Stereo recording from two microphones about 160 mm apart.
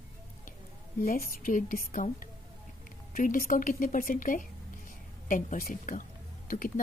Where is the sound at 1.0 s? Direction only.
60° left (ahead or behind).